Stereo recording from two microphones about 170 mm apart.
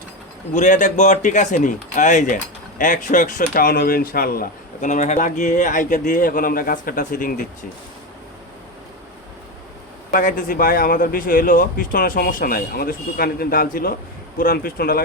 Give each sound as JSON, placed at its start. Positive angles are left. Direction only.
{"t": 0.5, "sound": "speech", "side_deg": 45}
{"t": 10.1, "sound": "speech", "side_deg": 55}